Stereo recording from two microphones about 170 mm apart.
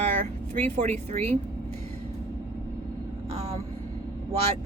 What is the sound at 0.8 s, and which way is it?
Speech, 40° right (ahead or behind).